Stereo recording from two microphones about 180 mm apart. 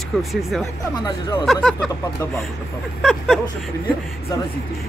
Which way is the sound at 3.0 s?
Centre (ahead or behind).